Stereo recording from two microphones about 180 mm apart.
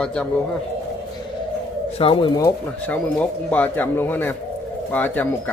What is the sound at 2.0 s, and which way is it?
Speech, 30° left (ahead or behind).